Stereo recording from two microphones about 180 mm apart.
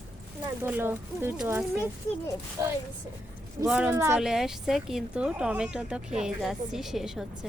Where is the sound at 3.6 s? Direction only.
5° right (ahead or behind).